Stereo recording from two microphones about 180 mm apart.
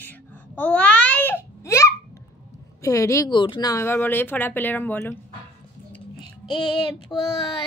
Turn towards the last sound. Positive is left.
turn(degrees=25)  # may be behind; listen again after turning